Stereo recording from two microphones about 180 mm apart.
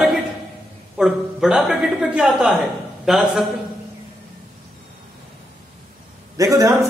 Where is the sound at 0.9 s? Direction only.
Centre (ahead or behind).